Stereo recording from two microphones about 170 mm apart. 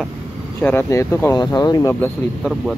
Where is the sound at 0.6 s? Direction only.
10° left (ahead or behind).